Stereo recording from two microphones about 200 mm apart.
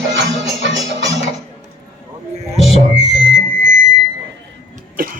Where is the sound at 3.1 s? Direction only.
70° right (ahead or behind).